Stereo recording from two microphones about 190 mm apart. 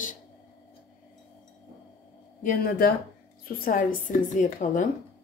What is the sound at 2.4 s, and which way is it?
A woman's voice, 50° left (ahead or behind).